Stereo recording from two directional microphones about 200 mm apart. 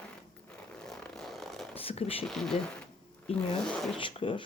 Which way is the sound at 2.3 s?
Centre (ahead or behind).